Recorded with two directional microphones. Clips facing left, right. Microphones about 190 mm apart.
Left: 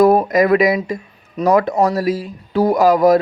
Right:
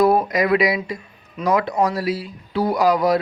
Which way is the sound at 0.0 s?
45° left (ahead or behind).